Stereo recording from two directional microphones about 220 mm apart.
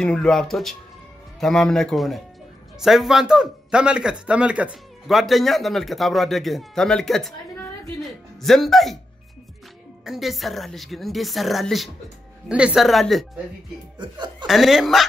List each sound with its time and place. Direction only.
0.0 s a man's voice: 5° left (ahead or behind)
10.0 s a man's voice: centre (ahead or behind)
13.9 s speech: 20° right (ahead or behind)
14.4 s a man's voice: centre (ahead or behind)